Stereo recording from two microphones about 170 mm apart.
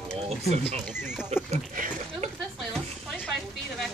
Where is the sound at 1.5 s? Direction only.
45° right (ahead or behind).